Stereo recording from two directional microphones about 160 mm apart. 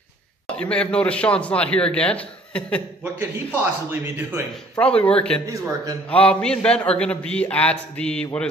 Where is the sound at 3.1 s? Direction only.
15° right (ahead or behind).